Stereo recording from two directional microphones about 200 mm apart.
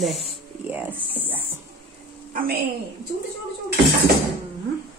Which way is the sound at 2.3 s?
45° right (ahead or behind).